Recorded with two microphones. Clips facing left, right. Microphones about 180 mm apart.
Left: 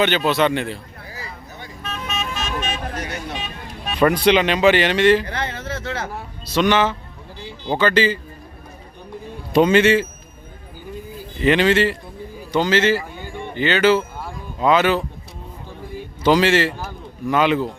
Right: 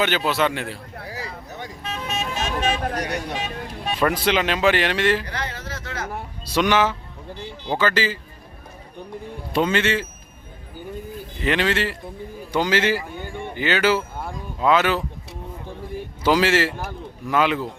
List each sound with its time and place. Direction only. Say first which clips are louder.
0.0 s speech: left 3 dB; 5° right (ahead or behind)
0.9 s a sound: right 3 dB; 75° right (ahead or behind)
1.8 s vehicle: left 1 dB; 30° right (ahead or behind)
4.0 s speech: left 6 dB; centre (ahead or behind)
5.2 s a sound: left 4 dB; 25° left (ahead or behind)
6.4 s speech: left 2 dB; 10° right (ahead or behind)
9.5 s speech: left 7 dB; 15° left (ahead or behind)
11.4 s speech: left 6 dB; centre (ahead or behind)
12.5 s speech: left 3 dB; 10° right (ahead or behind)
16.2 s speech: left 3 dB; 5° right (ahead or behind)